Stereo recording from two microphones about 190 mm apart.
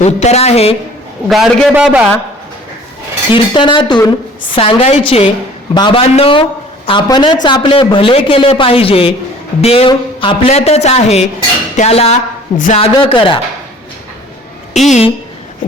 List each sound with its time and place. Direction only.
0.0 s a woman's voice: 35° left (ahead or behind)
1.3 s a man's voice: centre (ahead or behind)
3.3 s a woman's voice: 25° left (ahead or behind)
14.7 s a woman's voice: 35° left (ahead or behind)